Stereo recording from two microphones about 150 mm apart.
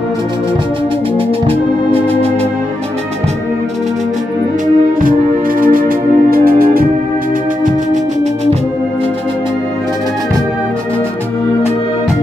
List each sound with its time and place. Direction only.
5.6 s music: 70° right (ahead or behind)